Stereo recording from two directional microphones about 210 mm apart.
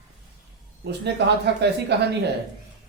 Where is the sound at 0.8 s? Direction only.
55° right (ahead or behind).